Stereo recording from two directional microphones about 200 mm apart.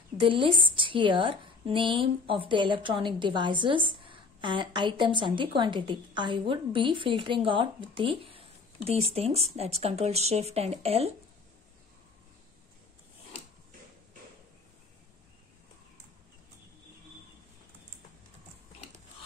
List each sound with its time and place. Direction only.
0.2 s a woman's voice: 25° right (ahead or behind)